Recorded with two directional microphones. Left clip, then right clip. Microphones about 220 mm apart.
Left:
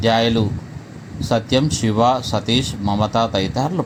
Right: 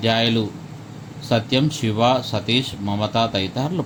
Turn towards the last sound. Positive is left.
turn(degrees=20)  # may be behind; listen again after turning